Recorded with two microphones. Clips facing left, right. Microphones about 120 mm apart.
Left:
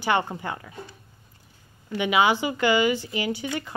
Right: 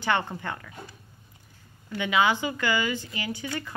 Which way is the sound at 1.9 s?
15° left (ahead or behind).